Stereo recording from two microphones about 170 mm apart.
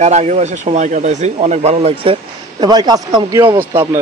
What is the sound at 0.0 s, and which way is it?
Speech, 40° right (ahead or behind).